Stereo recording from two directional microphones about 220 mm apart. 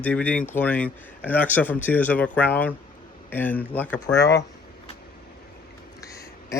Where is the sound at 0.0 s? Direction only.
5° left (ahead or behind).